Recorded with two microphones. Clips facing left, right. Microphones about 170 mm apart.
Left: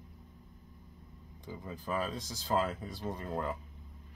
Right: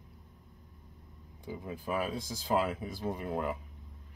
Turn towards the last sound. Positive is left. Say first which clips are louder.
# right 2 dB
turn(degrees=-15)  # may be behind; listen again after turning